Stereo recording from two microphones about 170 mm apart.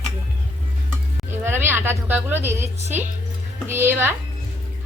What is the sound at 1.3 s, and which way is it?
A woman's voice, 15° right (ahead or behind).